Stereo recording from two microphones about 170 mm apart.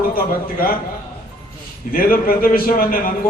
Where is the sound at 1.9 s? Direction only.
60° left (ahead or behind).